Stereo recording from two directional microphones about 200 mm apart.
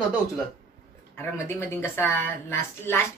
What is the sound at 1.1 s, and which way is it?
Speech, 10° left (ahead or behind).